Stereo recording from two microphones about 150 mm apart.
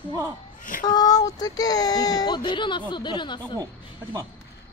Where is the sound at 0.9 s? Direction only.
25° left (ahead or behind).